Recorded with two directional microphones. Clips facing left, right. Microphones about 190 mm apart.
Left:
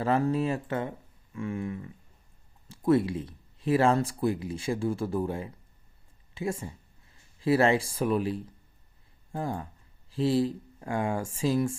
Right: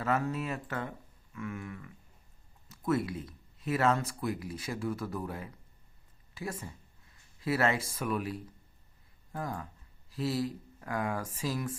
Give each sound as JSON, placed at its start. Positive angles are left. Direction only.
{"t": 0.0, "sound": "speech", "side_deg": 30}